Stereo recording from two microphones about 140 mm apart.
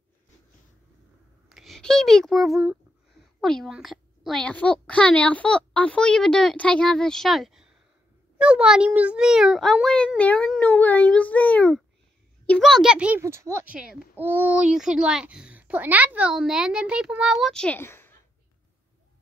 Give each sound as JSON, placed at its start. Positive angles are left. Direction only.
{"t": 1.5, "sound": "a child's voice", "side_deg": 0}
{"t": 13.2, "sound": "speech", "side_deg": -20}
{"t": 13.7, "sound": "a child's voice", "side_deg": -5}
{"t": 17.7, "sound": "speech", "side_deg": 15}